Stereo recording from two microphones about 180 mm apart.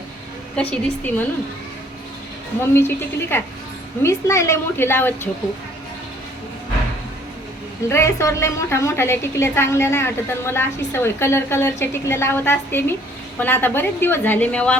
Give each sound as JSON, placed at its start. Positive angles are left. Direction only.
{"t": 0.5, "sound": "a woman's voice", "side_deg": 5}
{"t": 2.6, "sound": "a woman's voice", "side_deg": 15}
{"t": 7.9, "sound": "a woman's voice", "side_deg": 15}